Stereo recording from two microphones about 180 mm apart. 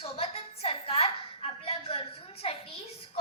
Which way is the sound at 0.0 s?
35° left (ahead or behind).